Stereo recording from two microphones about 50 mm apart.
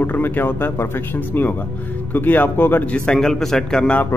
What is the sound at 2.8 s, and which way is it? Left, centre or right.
Speech, left.